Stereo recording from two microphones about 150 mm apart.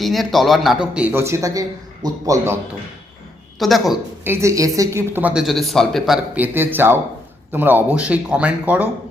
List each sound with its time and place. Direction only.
0.0 s a man's voice: centre (ahead or behind); by 2.6 s 20° right (ahead or behind)
3.6 s speech: centre (ahead or behind)
4.2 s speech: 15° right (ahead or behind); by 6.1 s centre (ahead or behind)
6.3 s speech: 15° right (ahead or behind)